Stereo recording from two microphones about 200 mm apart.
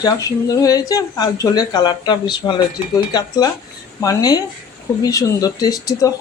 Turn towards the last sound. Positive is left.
turn(degrees=15)  # may be behind; listen again after turning